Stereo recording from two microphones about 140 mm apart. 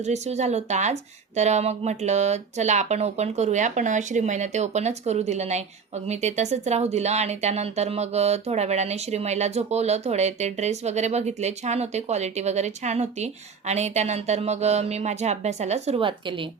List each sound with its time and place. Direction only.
0.0 s speech: 55° right (ahead or behind)
16.0 s speech: 35° right (ahead or behind)